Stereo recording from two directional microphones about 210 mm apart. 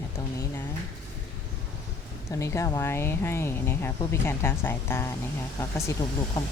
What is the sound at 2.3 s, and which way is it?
Speech, 15° left (ahead or behind).